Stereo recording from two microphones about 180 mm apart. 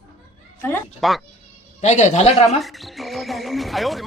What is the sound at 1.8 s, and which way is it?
Speech, 40° left (ahead or behind).